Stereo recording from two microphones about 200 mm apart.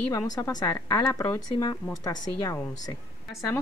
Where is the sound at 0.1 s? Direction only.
15° left (ahead or behind).